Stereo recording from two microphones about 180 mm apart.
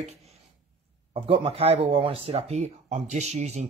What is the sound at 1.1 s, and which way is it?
Speech, 30° right (ahead or behind).